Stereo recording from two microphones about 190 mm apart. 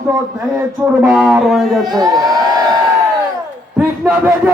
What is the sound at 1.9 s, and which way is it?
Speech, 20° right (ahead or behind).